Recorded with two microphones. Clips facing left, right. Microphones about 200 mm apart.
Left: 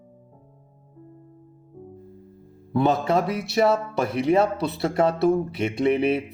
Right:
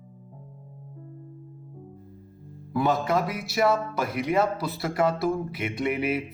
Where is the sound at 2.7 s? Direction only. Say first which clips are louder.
Left 3 dB; 25° left (ahead or behind).